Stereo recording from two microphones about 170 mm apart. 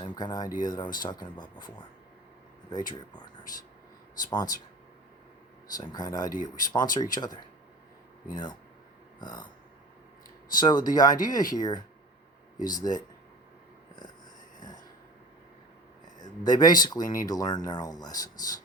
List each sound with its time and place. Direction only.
0.0 s speech: 25° left (ahead or behind)
4.3 s speech: 25° left (ahead or behind)
5.7 s speech: 25° left (ahead or behind)
6.3 s speech: 50° left (ahead or behind)
6.7 s speech: 25° left (ahead or behind)
10.6 s speech: 25° left (ahead or behind)
16.2 s speech: 25° left (ahead or behind)